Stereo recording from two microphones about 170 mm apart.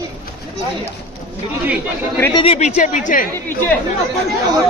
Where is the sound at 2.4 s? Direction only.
35° left (ahead or behind).